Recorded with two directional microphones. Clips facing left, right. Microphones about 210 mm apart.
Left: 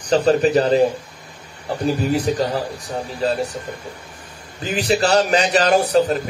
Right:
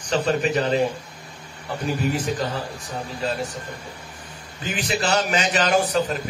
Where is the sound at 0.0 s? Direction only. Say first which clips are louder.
Left 6 dB; 35° left (ahead or behind).